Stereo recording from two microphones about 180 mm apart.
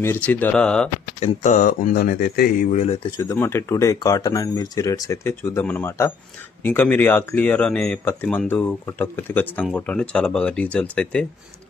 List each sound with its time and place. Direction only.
0.0 s speech: 10° left (ahead or behind)
1.2 s speech: 40° left (ahead or behind); by 2.7 s 60° left (ahead or behind)
2.7 s speech: 35° left (ahead or behind)
3.2 s speech: 15° left (ahead or behind)